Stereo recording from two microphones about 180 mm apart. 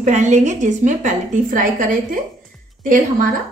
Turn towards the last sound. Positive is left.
turn(degrees=-50)  # may be behind; listen again after turning